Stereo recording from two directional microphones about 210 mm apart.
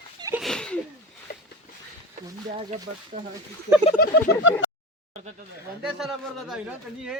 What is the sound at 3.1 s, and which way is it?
Speech, 35° right (ahead or behind).